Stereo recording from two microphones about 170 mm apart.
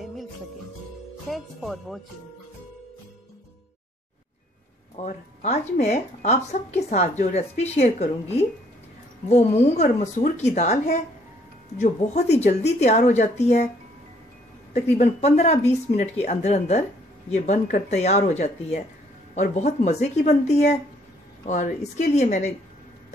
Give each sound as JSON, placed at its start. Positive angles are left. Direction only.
{"t": 1.3, "sound": "speech", "side_deg": 0}
{"t": 4.9, "sound": "a woman's voice", "side_deg": 40}
{"t": 14.7, "sound": "a woman's voice", "side_deg": 40}